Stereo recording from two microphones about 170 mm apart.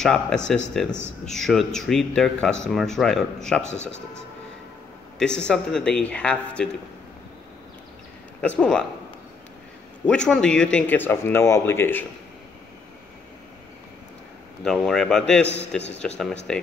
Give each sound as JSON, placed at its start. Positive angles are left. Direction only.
{"t": 0.0, "sound": "a man's voice", "side_deg": 5}
{"t": 5.2, "sound": "a man's voice", "side_deg": 5}
{"t": 8.4, "sound": "a man's voice", "side_deg": 5}
{"t": 10.0, "sound": "speech", "side_deg": 5}
{"t": 14.6, "sound": "a man's voice", "side_deg": 5}
{"t": 15.4, "sound": "a man's voice", "side_deg": 90}
{"t": 16.0, "sound": "a man's voice", "side_deg": 5}